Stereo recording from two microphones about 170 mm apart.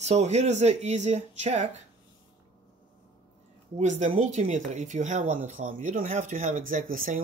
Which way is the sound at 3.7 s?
45° right (ahead or behind).